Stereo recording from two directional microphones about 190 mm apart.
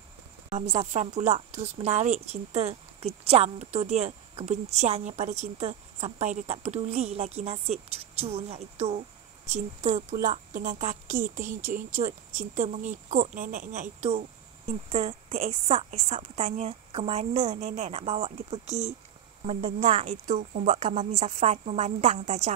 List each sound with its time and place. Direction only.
0.5 s a woman's voice: 35° right (ahead or behind)
10.0 s a woman's voice: 40° right (ahead or behind)